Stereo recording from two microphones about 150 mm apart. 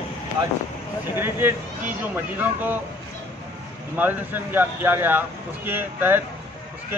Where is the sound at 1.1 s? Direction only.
15° right (ahead or behind).